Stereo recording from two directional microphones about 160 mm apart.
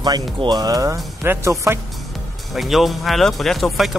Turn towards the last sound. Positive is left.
turn(degrees=0)  # may be behind; listen again after turning